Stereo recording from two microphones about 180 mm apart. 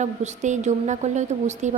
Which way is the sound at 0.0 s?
40° right (ahead or behind).